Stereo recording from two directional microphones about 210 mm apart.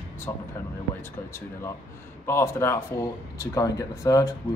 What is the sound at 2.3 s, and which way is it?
Speech, 10° left (ahead or behind).